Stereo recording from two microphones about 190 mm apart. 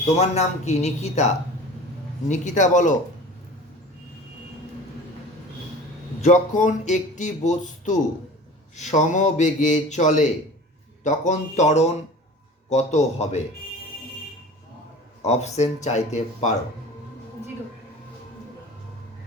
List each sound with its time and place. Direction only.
0.0 s speech: 35° left (ahead or behind)
2.3 s speech: 40° left (ahead or behind)
6.2 s speech: 40° left (ahead or behind)
15.2 s speech: 35° left (ahead or behind)